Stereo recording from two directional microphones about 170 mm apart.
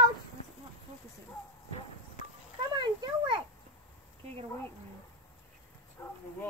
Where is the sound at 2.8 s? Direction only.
25° right (ahead or behind).